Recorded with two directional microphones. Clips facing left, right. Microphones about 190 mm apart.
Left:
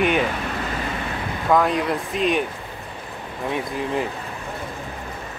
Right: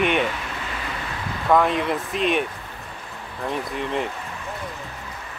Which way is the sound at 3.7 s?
Centre (ahead or behind).